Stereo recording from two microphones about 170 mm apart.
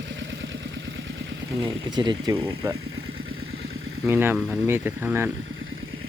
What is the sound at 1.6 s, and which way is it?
Speech, 25° right (ahead or behind).